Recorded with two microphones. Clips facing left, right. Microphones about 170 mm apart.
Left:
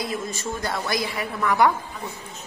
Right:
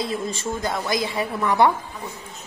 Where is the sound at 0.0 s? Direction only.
30° right (ahead or behind).